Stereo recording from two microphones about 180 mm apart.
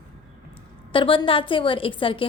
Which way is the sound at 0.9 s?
30° left (ahead or behind).